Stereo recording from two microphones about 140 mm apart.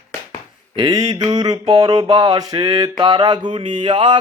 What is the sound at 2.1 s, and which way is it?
Mantra, 25° right (ahead or behind).